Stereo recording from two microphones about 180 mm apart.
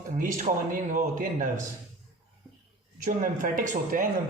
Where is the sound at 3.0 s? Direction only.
45° right (ahead or behind).